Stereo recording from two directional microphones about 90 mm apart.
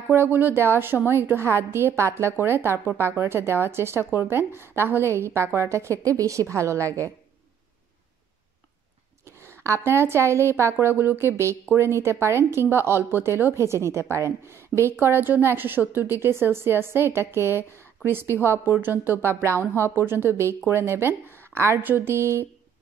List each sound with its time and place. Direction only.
0.1 s a woman's voice: 25° right (ahead or behind)
9.4 s a woman's voice: 30° right (ahead or behind)